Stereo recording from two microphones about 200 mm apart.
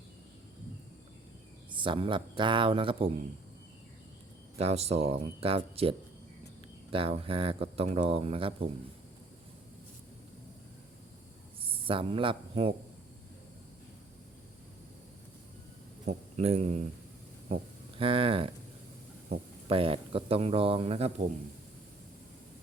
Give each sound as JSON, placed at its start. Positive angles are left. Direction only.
{"t": 1.7, "sound": "speech", "side_deg": -25}
{"t": 4.5, "sound": "speech", "side_deg": -30}
{"t": 11.6, "sound": "speech", "side_deg": -25}
{"t": 16.0, "sound": "speech", "side_deg": -30}
{"t": 19.6, "sound": "speech", "side_deg": -25}